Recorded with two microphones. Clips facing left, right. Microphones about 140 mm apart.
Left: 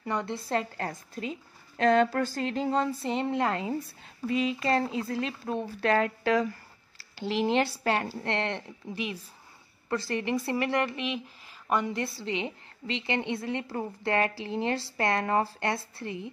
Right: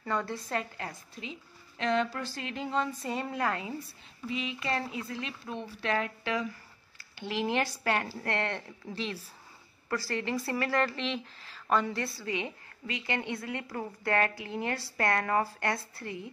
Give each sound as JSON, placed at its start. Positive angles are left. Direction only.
{"t": 0.0, "sound": "a woman's voice", "side_deg": 20}
{"t": 0.8, "sound": "speech", "side_deg": 45}
{"t": 4.3, "sound": "speech", "side_deg": 40}
{"t": 7.0, "sound": "a sound", "side_deg": 35}
{"t": 7.3, "sound": "a woman's voice", "side_deg": 25}